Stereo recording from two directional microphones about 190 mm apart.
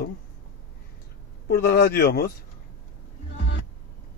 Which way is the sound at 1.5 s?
55° left (ahead or behind).